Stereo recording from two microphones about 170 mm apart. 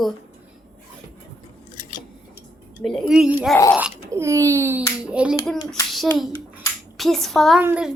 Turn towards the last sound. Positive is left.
turn(degrees=-10)  # may be behind; listen again after turning